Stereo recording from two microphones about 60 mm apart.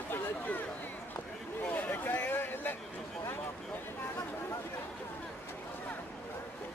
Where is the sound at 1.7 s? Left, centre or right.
Left.